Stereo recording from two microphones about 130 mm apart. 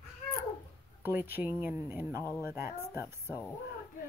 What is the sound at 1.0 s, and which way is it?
Speech, 15° right (ahead or behind).